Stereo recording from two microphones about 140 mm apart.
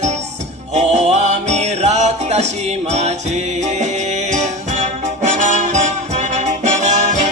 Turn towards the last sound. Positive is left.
turn(degrees=-55)  # may be behind; listen again after turning